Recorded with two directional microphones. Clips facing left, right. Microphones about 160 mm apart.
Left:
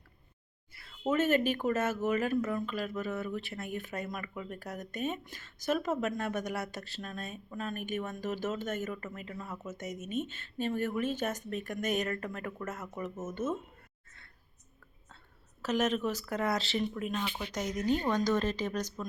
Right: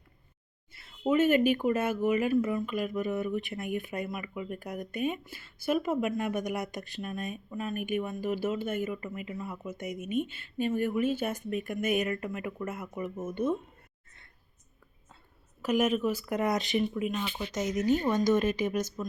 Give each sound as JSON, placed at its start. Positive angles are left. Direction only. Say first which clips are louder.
{"t": 0.7, "sound": "a sound", "louder": "even", "side_deg": -25}
{"t": 1.0, "sound": "speech", "louder": "right 4 dB", "side_deg": -10}
{"t": 15.6, "sound": "speech", "louder": "right 3 dB", "side_deg": -10}